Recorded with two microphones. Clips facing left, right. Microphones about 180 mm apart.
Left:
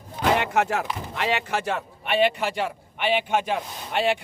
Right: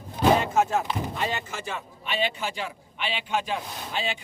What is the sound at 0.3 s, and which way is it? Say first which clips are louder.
Speech: even; 70° left (ahead or behind).